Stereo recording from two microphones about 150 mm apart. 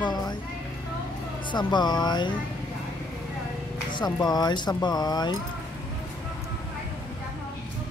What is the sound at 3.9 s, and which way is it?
A woman's voice, 30° left (ahead or behind).